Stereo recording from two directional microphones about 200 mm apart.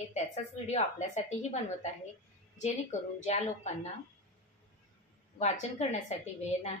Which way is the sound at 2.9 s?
35° left (ahead or behind).